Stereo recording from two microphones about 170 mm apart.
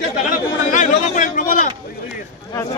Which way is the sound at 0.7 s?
45° left (ahead or behind).